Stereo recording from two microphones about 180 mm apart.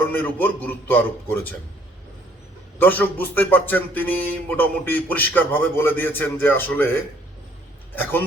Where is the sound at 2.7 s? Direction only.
10° left (ahead or behind).